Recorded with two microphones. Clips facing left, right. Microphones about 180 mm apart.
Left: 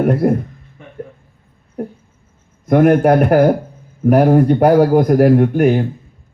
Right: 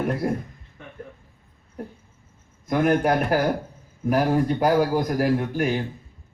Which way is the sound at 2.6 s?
55° left (ahead or behind).